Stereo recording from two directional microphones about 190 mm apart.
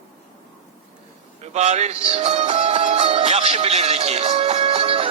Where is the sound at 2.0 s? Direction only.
35° right (ahead or behind).